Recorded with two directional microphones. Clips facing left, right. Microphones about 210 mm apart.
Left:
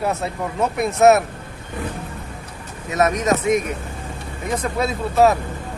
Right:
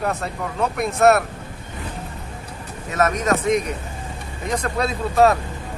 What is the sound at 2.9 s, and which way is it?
Speech, 10° left (ahead or behind).